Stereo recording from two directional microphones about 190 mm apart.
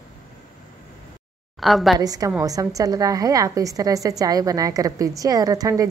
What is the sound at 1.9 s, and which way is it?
A woman's voice, 20° right (ahead or behind).